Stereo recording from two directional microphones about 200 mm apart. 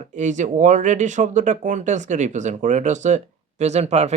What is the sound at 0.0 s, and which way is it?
Speech, 40° right (ahead or behind).